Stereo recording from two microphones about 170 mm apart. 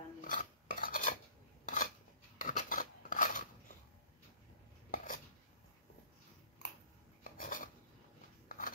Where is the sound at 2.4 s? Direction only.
50° left (ahead or behind).